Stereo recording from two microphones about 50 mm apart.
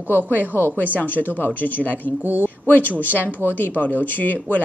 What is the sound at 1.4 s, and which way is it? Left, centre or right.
Speech, left.